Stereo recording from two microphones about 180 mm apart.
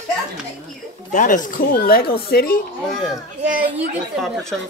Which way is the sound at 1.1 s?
50° left (ahead or behind).